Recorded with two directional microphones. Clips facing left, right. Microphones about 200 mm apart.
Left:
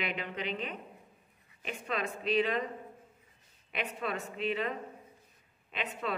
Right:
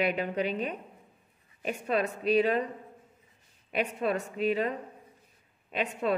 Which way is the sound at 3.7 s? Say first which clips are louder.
Right 7 dB; 40° right (ahead or behind).